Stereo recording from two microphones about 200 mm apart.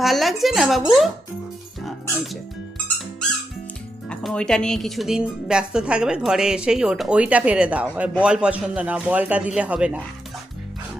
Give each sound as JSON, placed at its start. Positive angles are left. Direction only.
{"t": 0.0, "sound": "a woman's voice", "side_deg": 0}
{"t": 1.8, "sound": "music", "side_deg": 0}
{"t": 4.1, "sound": "a woman's voice", "side_deg": 5}